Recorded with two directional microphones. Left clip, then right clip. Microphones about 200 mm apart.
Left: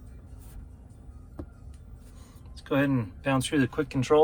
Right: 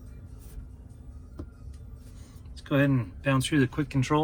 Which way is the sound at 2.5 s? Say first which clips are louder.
Even; 20° left (ahead or behind).